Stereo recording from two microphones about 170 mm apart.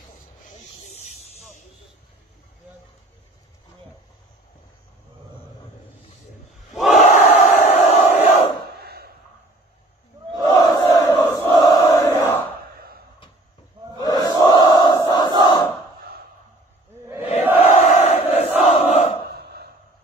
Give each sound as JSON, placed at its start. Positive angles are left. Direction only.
{"t": 0.5, "sound": "snake", "side_deg": 40}
{"t": 6.7, "sound": "crowd", "side_deg": 0}
{"t": 7.1, "sound": "crowd", "side_deg": 40}
{"t": 8.8, "sound": "a sound", "side_deg": -70}
{"t": 10.4, "sound": "crowd", "side_deg": 20}
{"t": 14.0, "sound": "crowd", "side_deg": 25}
{"t": 17.2, "sound": "crowd", "side_deg": 35}
{"t": 19.2, "sound": "a sound", "side_deg": -70}